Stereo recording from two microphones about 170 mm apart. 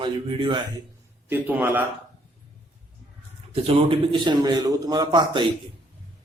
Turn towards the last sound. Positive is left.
turn(degrees=-25)  # may be behind; listen again after turning